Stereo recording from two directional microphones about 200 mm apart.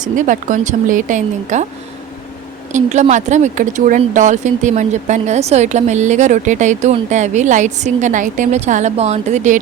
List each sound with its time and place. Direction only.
0.0 s speech: 40° right (ahead or behind)
2.7 s speech: 35° right (ahead or behind)